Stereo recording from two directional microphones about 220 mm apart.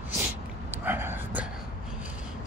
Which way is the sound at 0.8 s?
10° right (ahead or behind).